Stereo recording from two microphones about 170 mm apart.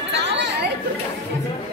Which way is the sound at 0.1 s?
90° right.